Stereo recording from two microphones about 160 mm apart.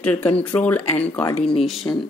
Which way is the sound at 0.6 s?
10° left (ahead or behind).